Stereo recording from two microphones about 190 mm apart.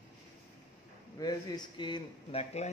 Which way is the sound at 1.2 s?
25° left (ahead or behind).